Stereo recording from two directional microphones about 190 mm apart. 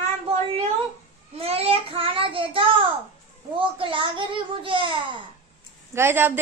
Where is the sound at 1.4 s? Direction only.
30° right (ahead or behind).